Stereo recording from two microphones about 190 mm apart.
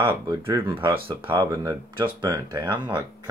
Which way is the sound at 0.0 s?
25° right (ahead or behind).